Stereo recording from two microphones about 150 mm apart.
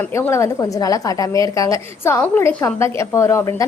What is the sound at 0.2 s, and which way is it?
A woman's voice, 20° left (ahead or behind).